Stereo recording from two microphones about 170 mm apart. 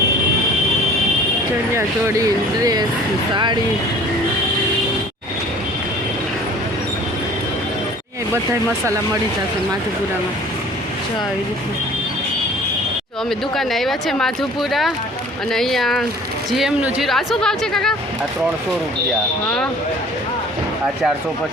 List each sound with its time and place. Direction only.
1.7 s speech: 15° right (ahead or behind)
13.6 s speech: centre (ahead or behind)